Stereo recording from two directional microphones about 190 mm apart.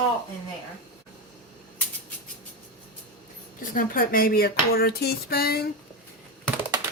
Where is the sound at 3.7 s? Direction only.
45° left (ahead or behind).